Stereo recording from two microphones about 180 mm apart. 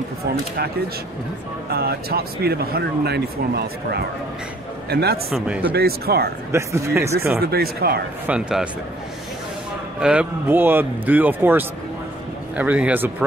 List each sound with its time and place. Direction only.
1.7 s a man's voice: 60° right (ahead or behind)
5.3 s speech: 5° right (ahead or behind)
5.8 s speech: 60° right (ahead or behind)
6.5 s speech: 15° right (ahead or behind)
7.3 s speech: 60° right (ahead or behind)
8.3 s speech: 5° right (ahead or behind)
9.9 s speech: 5° right (ahead or behind)